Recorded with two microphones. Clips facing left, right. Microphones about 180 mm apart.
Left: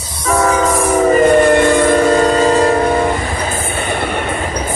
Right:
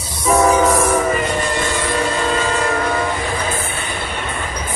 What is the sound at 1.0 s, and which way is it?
Train, 45° left (ahead or behind).